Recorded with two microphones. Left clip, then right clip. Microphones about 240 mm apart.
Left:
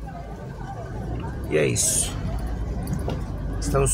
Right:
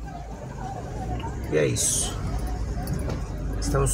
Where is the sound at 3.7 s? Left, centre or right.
Centre.